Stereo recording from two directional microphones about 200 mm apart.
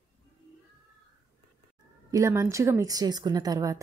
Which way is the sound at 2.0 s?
15° right (ahead or behind).